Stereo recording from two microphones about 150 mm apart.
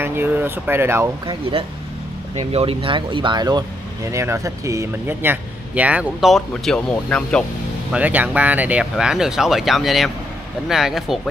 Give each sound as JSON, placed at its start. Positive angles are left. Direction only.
{"t": 0.0, "sound": "speech", "side_deg": -15}
{"t": 1.2, "sound": "speech", "side_deg": -30}
{"t": 7.9, "sound": "speech", "side_deg": -10}